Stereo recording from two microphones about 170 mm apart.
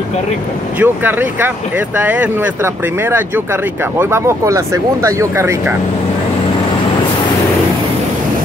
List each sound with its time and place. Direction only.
0.7 s speech: 10° right (ahead or behind)